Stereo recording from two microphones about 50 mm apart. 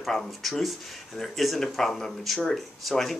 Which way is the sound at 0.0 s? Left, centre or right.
Centre.